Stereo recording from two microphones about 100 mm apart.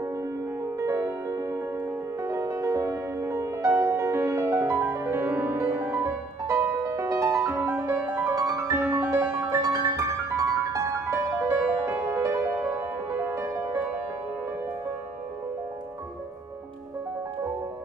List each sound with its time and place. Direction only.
0.0 s music: 30° right (ahead or behind)